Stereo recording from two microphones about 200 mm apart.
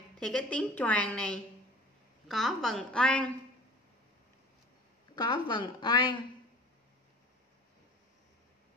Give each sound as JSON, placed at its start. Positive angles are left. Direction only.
{"t": 0.2, "sound": "a woman's voice", "side_deg": 5}
{"t": 5.1, "sound": "a woman's voice", "side_deg": 20}